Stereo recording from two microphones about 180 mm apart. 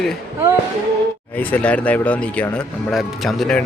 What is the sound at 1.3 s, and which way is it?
Speech, 10° left (ahead or behind).